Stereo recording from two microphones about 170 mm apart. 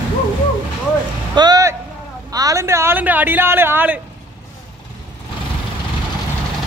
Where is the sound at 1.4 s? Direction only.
20° right (ahead or behind).